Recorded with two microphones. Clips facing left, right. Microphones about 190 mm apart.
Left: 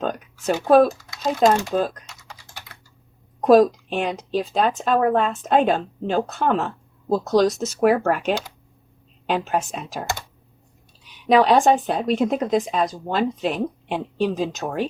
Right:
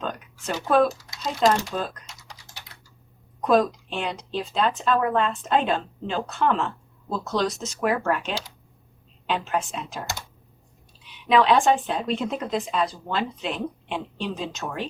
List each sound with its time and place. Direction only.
0.0 s speech: 45° left (ahead or behind)
3.4 s speech: 45° left (ahead or behind)
9.5 s speech: 45° left (ahead or behind)
11.3 s speech: 40° left (ahead or behind)